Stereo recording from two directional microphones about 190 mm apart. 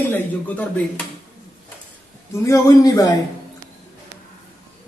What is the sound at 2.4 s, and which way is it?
Speech, 15° left (ahead or behind).